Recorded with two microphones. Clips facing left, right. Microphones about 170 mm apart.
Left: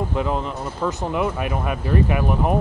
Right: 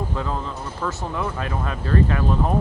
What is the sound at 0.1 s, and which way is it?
Speech, 20° left (ahead or behind).